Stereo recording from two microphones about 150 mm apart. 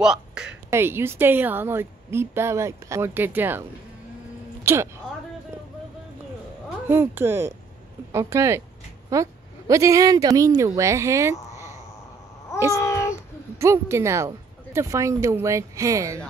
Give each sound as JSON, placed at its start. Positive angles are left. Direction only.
{"t": 0.0, "sound": "a sound", "side_deg": -5}
{"t": 0.7, "sound": "a woman's voice", "side_deg": -15}
{"t": 4.7, "sound": "a woman's voice", "side_deg": -15}
{"t": 6.9, "sound": "a woman's voice", "side_deg": -15}
{"t": 12.7, "sound": "cat", "side_deg": 20}
{"t": 13.6, "sound": "speech", "side_deg": -20}